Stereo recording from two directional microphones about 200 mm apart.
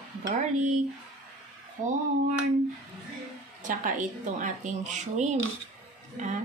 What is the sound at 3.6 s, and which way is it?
A woman's voice, 40° right (ahead or behind).